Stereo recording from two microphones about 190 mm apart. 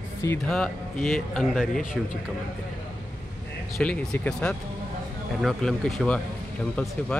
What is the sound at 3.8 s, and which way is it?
Speech, 5° left (ahead or behind).